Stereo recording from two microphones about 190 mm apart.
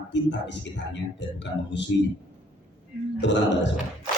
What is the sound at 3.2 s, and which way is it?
Speech, 70° left (ahead or behind).